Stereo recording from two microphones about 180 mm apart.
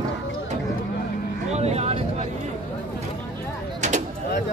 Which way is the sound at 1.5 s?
35° right (ahead or behind).